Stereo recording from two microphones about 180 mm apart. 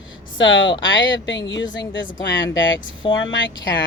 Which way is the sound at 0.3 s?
90° left.